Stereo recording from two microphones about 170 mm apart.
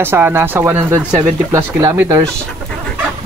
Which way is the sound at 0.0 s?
15° right (ahead or behind).